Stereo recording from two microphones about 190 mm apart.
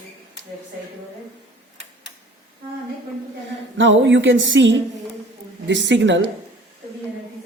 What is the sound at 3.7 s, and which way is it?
A man's voice, 75° right (ahead or behind).